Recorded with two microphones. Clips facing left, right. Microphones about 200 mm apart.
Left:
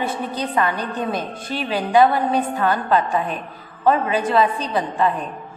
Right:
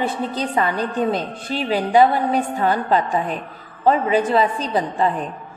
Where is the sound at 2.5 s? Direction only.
25° right (ahead or behind).